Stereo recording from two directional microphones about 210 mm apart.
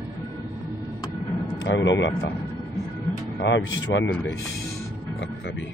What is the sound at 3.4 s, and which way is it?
Speech, 60° left (ahead or behind).